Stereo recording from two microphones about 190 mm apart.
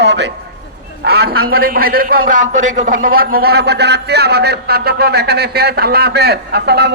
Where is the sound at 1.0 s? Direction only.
55° right (ahead or behind).